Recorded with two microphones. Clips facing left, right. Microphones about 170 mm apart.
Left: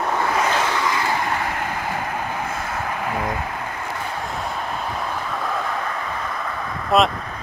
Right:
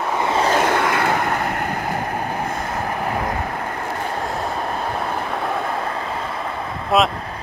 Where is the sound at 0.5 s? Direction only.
55° right (ahead or behind).